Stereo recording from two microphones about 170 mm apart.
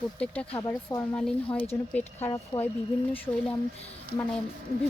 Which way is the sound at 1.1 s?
5° left (ahead or behind).